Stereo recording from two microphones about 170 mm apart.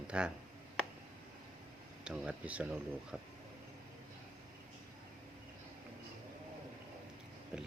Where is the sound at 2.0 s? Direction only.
5° right (ahead or behind).